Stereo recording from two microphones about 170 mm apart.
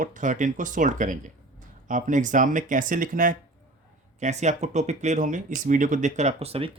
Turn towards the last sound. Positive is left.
turn(degrees=-35)  # may be behind; listen again after turning